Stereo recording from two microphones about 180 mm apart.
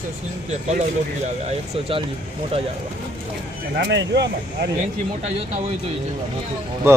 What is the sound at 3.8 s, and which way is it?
Speech, 75° right (ahead or behind).